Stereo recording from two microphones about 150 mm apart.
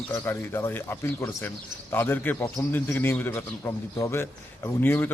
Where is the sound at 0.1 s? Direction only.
15° left (ahead or behind).